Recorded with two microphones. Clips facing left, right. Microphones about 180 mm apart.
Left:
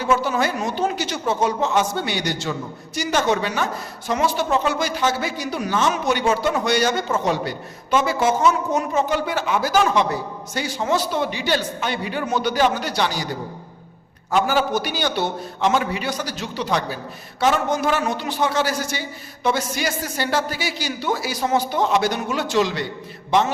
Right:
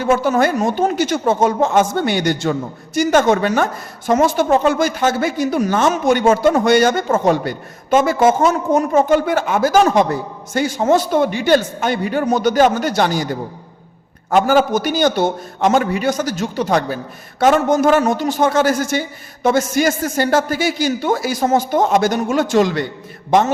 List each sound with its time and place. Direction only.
0.0 s speech: 50° right (ahead or behind)
14.3 s speech: 50° right (ahead or behind)